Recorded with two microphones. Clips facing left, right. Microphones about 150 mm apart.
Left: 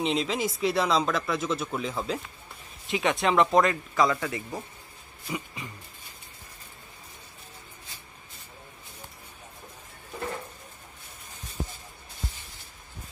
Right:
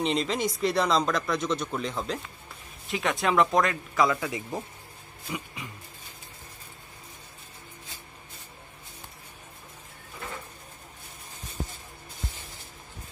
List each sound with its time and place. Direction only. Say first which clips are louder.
0.0 s speech: even; centre (ahead or behind)
4.5 s speech: right 2 dB; 20° right (ahead or behind)
5.3 s speech: left 1 dB; centre (ahead or behind)